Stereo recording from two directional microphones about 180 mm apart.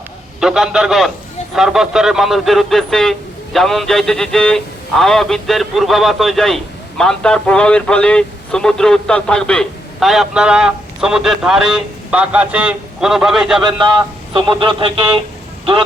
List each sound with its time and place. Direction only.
0.3 s speech: 5° right (ahead or behind)
14.6 s speech: 25° right (ahead or behind)